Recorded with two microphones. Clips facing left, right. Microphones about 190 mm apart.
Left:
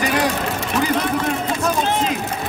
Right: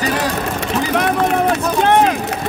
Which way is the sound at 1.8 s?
65° right (ahead or behind).